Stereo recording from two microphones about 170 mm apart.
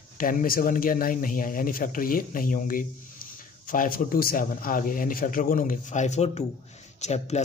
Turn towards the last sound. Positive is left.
turn(degrees=40)  # may be behind; listen again after turning